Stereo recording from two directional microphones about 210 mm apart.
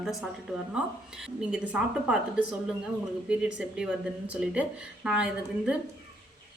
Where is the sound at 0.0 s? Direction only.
Centre (ahead or behind).